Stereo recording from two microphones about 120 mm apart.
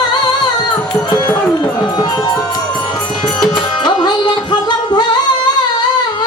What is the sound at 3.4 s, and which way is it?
Music, 35° left (ahead or behind).